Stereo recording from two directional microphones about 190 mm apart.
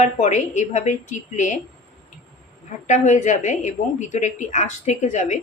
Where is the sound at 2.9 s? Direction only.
40° left (ahead or behind).